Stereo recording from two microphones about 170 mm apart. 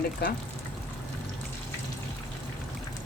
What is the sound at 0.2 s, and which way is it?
Speech, 70° left (ahead or behind).